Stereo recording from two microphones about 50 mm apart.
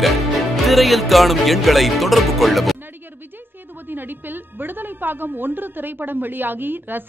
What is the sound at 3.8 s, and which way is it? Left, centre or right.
A woman's voice, right.